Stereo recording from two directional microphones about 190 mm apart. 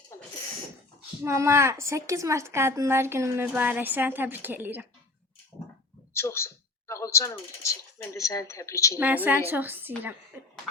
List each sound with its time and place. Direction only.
0.1 s a sound: 15° left (ahead or behind)
1.2 s speech: 15° right (ahead or behind)
6.1 s speech: 15° left (ahead or behind)
9.0 s speech: 10° right (ahead or behind)